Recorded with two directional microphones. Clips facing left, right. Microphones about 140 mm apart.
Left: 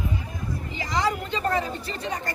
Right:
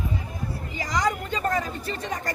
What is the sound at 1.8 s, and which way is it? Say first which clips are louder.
Speech: right 1 dB; 45° right (ahead or behind).